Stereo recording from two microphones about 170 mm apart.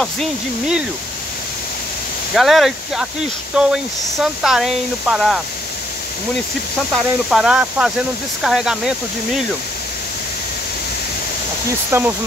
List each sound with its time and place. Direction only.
0.0 s speech: centre (ahead or behind)
2.3 s speech: centre (ahead or behind)
6.9 s speech: centre (ahead or behind)
11.9 s speech: 15° right (ahead or behind)